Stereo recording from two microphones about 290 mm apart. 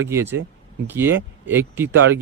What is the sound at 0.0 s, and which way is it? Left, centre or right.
Speech, centre.